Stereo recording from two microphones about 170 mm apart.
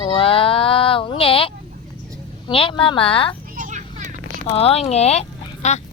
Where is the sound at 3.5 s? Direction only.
50° right (ahead or behind).